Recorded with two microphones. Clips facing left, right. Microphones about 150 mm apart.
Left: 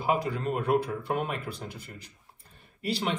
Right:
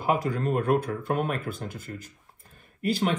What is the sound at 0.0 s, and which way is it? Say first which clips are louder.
Speech: right 2 dB; 45° right (ahead or behind).